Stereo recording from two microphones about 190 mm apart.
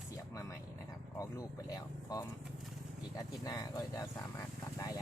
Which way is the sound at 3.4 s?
20° left (ahead or behind).